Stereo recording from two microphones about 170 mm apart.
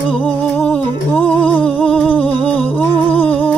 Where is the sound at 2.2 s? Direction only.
5° left (ahead or behind).